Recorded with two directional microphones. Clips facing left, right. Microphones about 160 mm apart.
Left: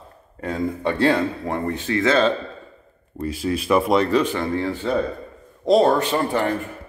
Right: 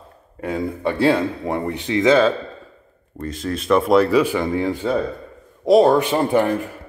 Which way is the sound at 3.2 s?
5° left (ahead or behind).